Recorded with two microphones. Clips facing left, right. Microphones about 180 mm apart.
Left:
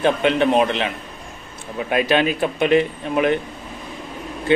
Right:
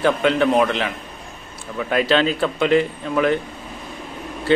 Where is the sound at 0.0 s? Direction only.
20° left (ahead or behind).